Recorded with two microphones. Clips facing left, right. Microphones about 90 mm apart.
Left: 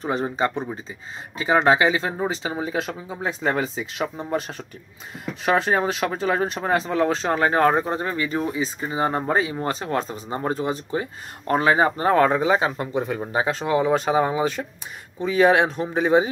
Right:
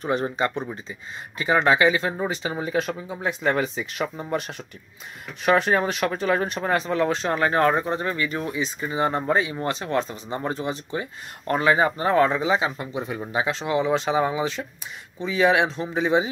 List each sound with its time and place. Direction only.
0.2 s speech: 30° left (ahead or behind)
12.1 s speech: 45° left (ahead or behind)
13.2 s speech: 40° left (ahead or behind)